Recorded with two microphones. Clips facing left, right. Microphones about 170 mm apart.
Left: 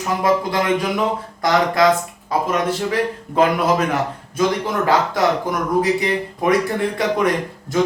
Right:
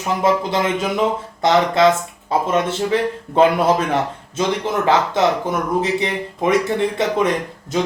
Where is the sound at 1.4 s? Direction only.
25° right (ahead or behind).